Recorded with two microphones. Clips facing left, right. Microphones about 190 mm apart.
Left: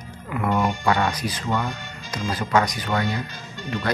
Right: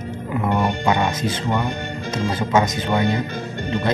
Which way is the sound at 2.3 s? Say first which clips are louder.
Right 2 dB; 25° right (ahead or behind).